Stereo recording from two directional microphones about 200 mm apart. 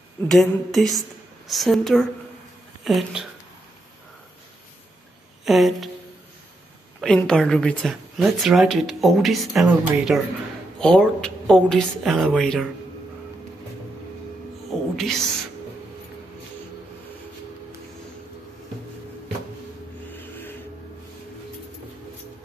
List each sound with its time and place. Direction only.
0.3 s speech: centre (ahead or behind)
5.4 s speech: centre (ahead or behind)
7.0 s speech: 5° left (ahead or behind)
15.0 s speech: centre (ahead or behind)
20.1 s a sound: 10° left (ahead or behind)